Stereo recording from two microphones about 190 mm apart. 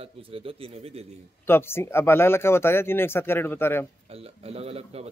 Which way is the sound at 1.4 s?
10° left (ahead or behind).